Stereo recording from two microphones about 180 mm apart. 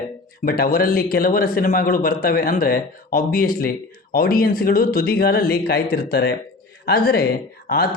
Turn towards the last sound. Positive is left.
turn(degrees=60)  # may be behind; listen again after turning